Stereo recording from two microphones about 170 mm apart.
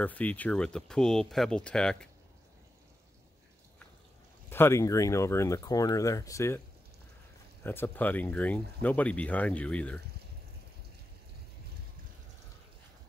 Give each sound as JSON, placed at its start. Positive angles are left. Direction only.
{"t": 0.0, "sound": "speech", "side_deg": 10}
{"t": 4.5, "sound": "speech", "side_deg": 15}
{"t": 7.6, "sound": "speech", "side_deg": 10}